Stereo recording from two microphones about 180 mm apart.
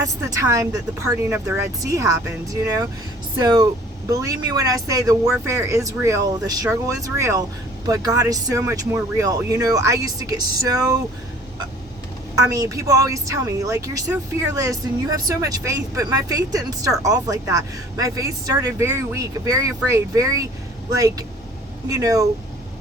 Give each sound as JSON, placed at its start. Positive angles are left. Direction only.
{"t": 0.0, "sound": "speech", "side_deg": -20}
{"t": 12.4, "sound": "speech", "side_deg": -15}
{"t": 15.1, "sound": "speech", "side_deg": -20}